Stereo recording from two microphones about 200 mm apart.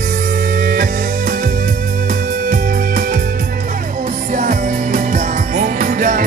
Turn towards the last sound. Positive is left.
turn(degrees=-40)  # may be behind; listen again after turning